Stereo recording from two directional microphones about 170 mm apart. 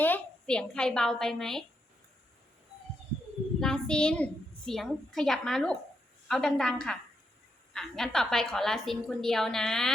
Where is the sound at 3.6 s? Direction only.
5° left (ahead or behind).